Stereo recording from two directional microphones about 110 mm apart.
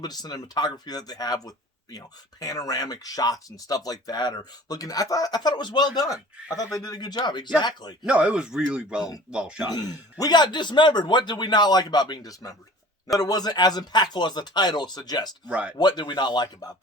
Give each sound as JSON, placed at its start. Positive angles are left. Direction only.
{"t": 0.0, "sound": "speech", "side_deg": 40}
{"t": 8.0, "sound": "speech", "side_deg": -10}
{"t": 9.6, "sound": "speech", "side_deg": 35}
{"t": 15.4, "sound": "speech", "side_deg": -10}
{"t": 15.8, "sound": "speech", "side_deg": 40}